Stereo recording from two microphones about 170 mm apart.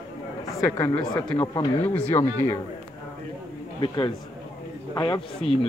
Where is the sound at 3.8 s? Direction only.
30° left (ahead or behind).